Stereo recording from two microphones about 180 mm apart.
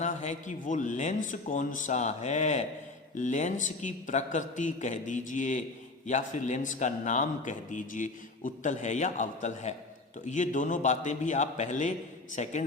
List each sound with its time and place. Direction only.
0.0 s a man's voice: 40° left (ahead or behind)